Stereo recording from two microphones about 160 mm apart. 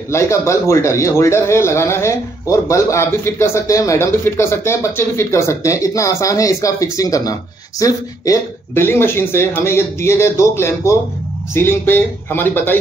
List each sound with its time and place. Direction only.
0.1 s a man's voice: 20° left (ahead or behind)